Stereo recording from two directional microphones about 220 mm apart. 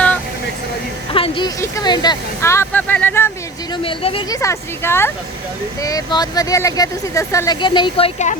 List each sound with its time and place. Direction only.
1.1 s speech: 25° left (ahead or behind)
3.8 s speech: 25° left (ahead or behind)
4.4 s speech: 10° left (ahead or behind); by 8.4 s 30° left (ahead or behind)